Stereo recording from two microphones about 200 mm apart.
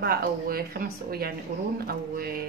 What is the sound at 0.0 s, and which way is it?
Speech, 50° right (ahead or behind).